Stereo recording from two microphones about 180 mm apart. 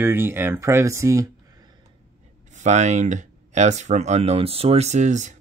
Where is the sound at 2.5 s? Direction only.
40° right (ahead or behind).